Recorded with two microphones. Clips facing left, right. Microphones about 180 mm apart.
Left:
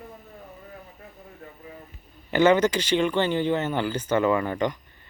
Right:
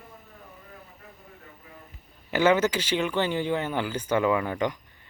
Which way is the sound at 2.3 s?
5° right (ahead or behind).